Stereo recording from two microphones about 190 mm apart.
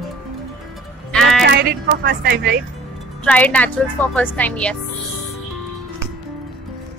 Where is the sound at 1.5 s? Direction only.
60° right (ahead or behind).